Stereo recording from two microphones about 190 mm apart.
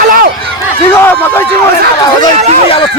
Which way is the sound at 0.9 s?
10° left (ahead or behind).